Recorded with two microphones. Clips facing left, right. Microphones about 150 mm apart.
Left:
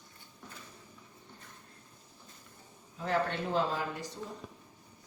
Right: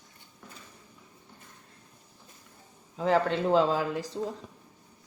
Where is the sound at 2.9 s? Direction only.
90° right.